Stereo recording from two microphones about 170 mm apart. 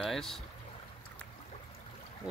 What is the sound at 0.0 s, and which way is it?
Speech, centre (ahead or behind).